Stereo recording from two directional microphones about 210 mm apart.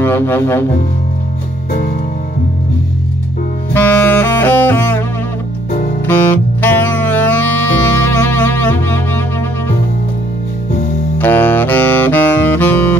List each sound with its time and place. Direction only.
0.0 s speech: 10° left (ahead or behind)
3.7 s saxophone: 10° left (ahead or behind)
5.7 s music: 40° left (ahead or behind)
6.0 s saxophone: 10° left (ahead or behind)
11.1 s saxophone: 10° left (ahead or behind)